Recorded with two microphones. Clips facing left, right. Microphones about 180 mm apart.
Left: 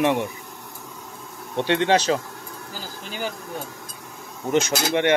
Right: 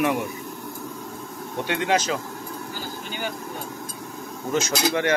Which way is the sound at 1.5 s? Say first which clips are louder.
Left 4 dB; 30° left (ahead or behind).